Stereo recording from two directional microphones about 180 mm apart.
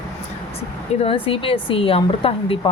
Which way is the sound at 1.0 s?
30° left (ahead or behind).